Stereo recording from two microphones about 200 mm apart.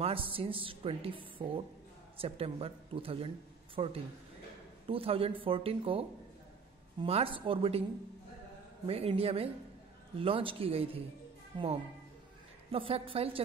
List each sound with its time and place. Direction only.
0.0 s a woman's voice: 25° right (ahead or behind)
8.8 s a woman's voice: 30° right (ahead or behind)